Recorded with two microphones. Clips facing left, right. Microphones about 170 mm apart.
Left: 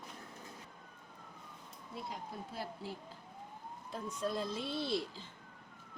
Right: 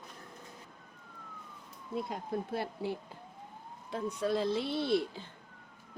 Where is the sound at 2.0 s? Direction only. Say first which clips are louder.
Right 8 dB; 60° right (ahead or behind).